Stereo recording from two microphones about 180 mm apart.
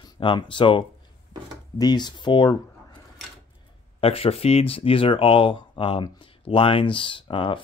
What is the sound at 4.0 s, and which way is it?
Speech, 30° left (ahead or behind).